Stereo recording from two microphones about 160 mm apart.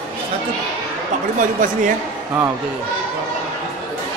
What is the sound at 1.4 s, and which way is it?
Speech, 55° right (ahead or behind).